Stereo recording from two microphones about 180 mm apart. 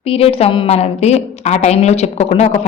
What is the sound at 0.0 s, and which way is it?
A woman's voice, 30° left (ahead or behind).